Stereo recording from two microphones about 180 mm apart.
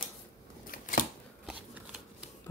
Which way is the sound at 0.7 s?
50° left (ahead or behind).